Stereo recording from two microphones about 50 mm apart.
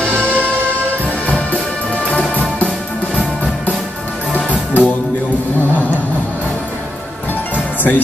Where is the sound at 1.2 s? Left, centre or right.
Left.